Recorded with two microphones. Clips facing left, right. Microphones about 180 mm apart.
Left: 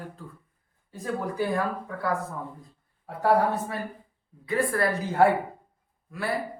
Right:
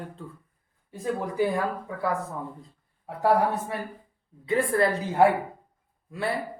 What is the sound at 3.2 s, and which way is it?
Speech, 15° right (ahead or behind).